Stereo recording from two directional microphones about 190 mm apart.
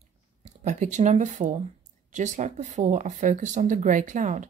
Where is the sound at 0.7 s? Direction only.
40° right (ahead or behind).